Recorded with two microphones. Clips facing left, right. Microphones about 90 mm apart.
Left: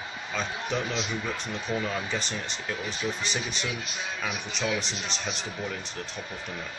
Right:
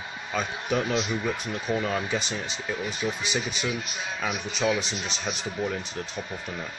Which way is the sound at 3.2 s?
5° right (ahead or behind).